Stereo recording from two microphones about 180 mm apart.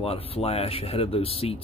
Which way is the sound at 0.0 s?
35° left (ahead or behind).